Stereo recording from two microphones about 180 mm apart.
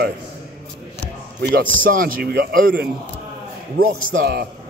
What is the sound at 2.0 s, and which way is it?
Speech, 55° right (ahead or behind).